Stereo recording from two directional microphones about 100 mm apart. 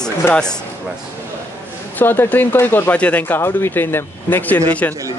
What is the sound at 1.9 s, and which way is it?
Speech, 20° left (ahead or behind).